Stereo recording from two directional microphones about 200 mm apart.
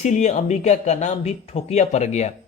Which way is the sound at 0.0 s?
35° left (ahead or behind).